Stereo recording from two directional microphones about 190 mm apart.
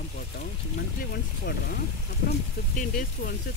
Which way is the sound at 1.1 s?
55° left (ahead or behind).